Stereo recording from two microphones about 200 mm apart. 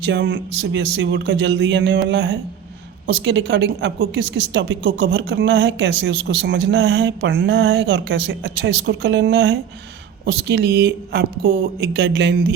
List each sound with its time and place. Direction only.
0.0 s speech: 60° right (ahead or behind)